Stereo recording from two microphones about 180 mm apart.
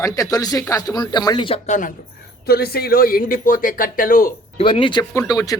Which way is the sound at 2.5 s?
60° left (ahead or behind).